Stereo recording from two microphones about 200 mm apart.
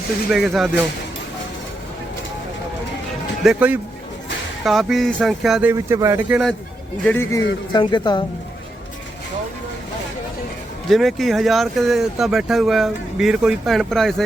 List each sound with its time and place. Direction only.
0.3 s speech: centre (ahead or behind)
3.4 s speech: 5° right (ahead or behind)
5.7 s speech: 15° right (ahead or behind)
7.0 s a man's voice: 10° left (ahead or behind)
10.8 s speech: centre (ahead or behind)